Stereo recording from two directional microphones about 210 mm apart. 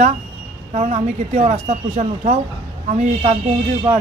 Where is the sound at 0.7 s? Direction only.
30° right (ahead or behind).